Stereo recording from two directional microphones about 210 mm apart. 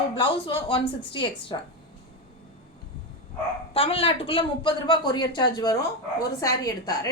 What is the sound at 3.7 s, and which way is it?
A woman's voice, 25° left (ahead or behind).